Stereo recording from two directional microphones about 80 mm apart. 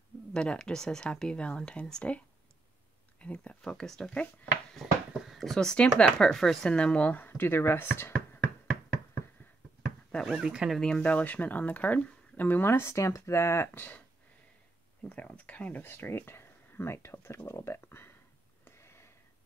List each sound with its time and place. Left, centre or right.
0.3 s speech: centre; by 8.4 s left
10.2 s speech: centre
10.8 s speech: centre; by 13.7 s left
13.7 s speech: left
15.0 s speech: centre; by 17.4 s left
17.5 s a sound: left